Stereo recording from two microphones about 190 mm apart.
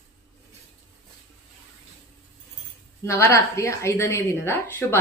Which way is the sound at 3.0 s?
15° left (ahead or behind).